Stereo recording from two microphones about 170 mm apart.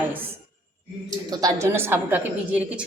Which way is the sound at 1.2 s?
20° right (ahead or behind).